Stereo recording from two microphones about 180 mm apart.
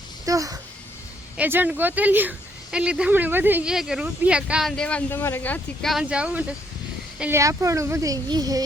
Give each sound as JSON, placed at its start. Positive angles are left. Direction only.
{"t": 0.3, "sound": "a woman's voice", "side_deg": -20}